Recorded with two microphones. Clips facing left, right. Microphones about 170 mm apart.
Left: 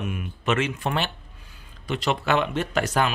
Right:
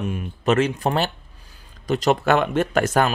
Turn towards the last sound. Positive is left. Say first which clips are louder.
# right 4 dB
turn(degrees=-50)  # may be behind; listen again after turning